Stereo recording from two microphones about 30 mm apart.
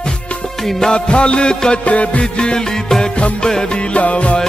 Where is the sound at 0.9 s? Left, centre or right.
Left.